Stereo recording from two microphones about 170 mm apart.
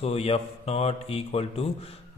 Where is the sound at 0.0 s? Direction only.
35° left (ahead or behind).